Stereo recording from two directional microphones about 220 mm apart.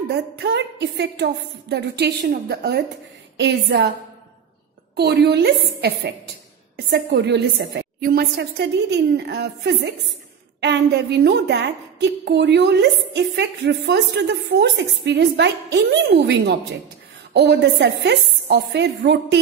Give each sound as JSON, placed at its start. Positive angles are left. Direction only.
{"t": 0.1, "sound": "a woman's voice", "side_deg": -50}
{"t": 4.9, "sound": "a woman's voice", "side_deg": -50}